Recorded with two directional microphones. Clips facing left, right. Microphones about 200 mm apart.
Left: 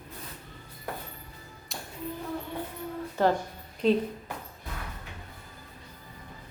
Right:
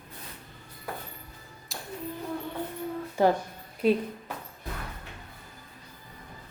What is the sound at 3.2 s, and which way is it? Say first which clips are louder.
Speech: right 2 dB; 15° right (ahead or behind).